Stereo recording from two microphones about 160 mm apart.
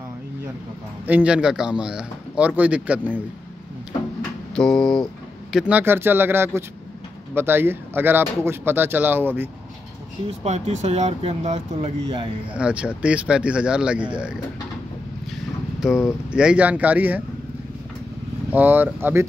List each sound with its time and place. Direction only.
1.0 s speech: 10° right (ahead or behind)
4.6 s speech: 5° left (ahead or behind)
5.5 s speech: 5° right (ahead or behind)
10.2 s speech: 40° right (ahead or behind)
12.5 s speech: 5° right (ahead or behind)
15.8 s speech: 5° right (ahead or behind)
18.5 s speech: 10° right (ahead or behind)